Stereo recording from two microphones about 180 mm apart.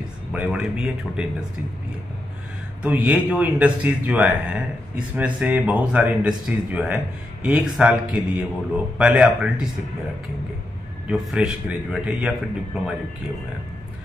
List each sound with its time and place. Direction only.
0.3 s a man's voice: 5° right (ahead or behind)
2.8 s a man's voice: 5° right (ahead or behind)
11.1 s a man's voice: 5° right (ahead or behind)